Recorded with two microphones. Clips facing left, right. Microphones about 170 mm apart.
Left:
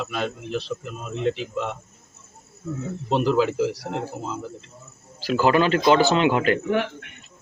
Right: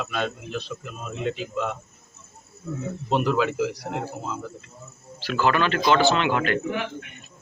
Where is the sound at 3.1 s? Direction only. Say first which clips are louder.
Left 2 dB; 30° left (ahead or behind).